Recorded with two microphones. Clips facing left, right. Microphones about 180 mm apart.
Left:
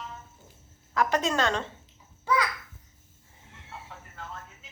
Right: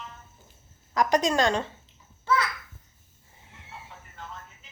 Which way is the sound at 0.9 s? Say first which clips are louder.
Right 3 dB; 15° right (ahead or behind).